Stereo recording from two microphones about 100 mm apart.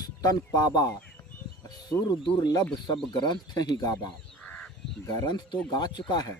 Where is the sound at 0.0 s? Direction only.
40° left (ahead or behind).